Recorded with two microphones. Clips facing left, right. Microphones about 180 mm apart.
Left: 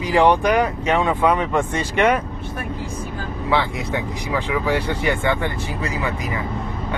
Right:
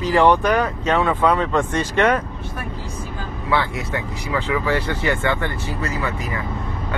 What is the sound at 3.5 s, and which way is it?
Speech, 15° left (ahead or behind).